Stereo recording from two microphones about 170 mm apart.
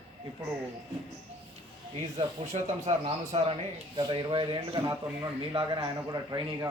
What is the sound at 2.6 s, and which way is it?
A man's voice, 40° right (ahead or behind).